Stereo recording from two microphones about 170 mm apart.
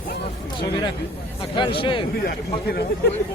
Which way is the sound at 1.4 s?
30° left (ahead or behind).